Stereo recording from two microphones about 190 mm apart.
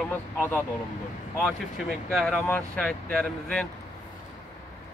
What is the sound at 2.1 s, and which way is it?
Speech, centre (ahead or behind).